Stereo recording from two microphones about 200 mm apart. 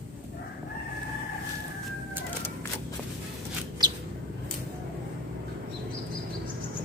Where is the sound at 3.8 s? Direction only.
20° right (ahead or behind).